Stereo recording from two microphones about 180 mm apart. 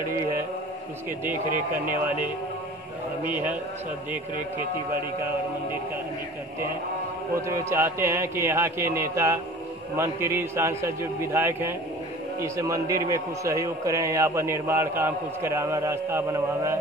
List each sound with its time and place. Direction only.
7.4 s a man's voice: 15° right (ahead or behind)